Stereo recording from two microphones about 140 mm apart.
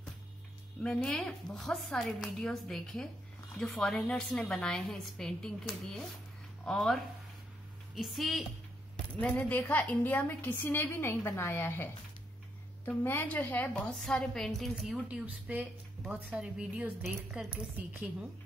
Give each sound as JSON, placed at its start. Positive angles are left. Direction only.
{"t": 0.7, "sound": "a woman's voice", "side_deg": 5}
{"t": 6.6, "sound": "a woman's voice", "side_deg": 5}
{"t": 9.2, "sound": "a woman's voice", "side_deg": 10}
{"t": 17.5, "sound": "speech", "side_deg": -15}